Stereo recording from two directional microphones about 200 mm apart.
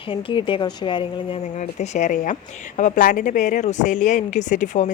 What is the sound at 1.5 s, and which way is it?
Speech, 35° left (ahead or behind).